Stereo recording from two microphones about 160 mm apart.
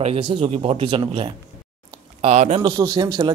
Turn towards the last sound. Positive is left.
turn(degrees=-25)  # may be behind; listen again after turning